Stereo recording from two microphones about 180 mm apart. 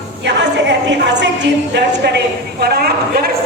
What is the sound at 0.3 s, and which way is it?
A woman's voice, 75° right (ahead or behind).